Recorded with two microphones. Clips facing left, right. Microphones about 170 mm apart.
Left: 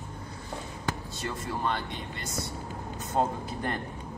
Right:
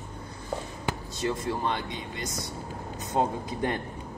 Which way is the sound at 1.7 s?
15° right (ahead or behind).